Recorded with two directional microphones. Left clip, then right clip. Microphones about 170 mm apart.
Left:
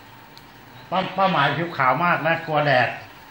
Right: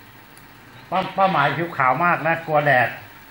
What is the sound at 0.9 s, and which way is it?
A man's voice, 10° left (ahead or behind).